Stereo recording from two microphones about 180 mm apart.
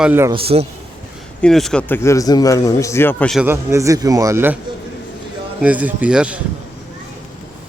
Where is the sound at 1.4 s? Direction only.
5° left (ahead or behind).